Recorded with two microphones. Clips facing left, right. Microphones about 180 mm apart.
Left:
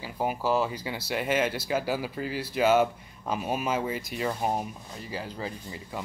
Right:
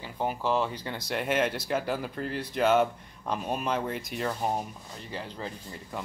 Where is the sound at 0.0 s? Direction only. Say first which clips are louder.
Left 1 dB; 10° left (ahead or behind).